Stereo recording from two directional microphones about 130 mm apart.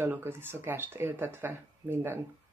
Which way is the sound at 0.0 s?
15° right (ahead or behind).